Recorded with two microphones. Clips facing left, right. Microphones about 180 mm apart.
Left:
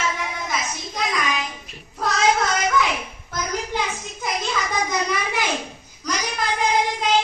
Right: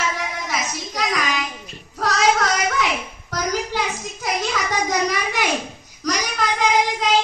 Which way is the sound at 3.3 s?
80° right.